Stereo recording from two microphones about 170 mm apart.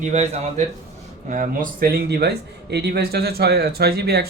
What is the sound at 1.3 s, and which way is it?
Speech, 50° right (ahead or behind).